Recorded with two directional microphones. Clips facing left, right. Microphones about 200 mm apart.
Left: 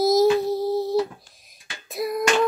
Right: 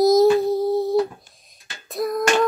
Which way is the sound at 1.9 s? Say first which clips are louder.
Right 2 dB; centre (ahead or behind).